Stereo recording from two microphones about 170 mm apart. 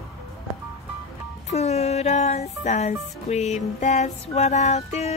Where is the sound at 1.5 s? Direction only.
40° left (ahead or behind).